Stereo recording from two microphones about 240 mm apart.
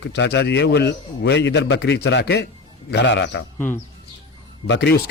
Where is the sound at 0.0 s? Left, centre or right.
Left.